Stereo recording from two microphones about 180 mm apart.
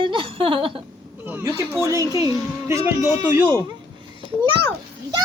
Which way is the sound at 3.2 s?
20° right (ahead or behind).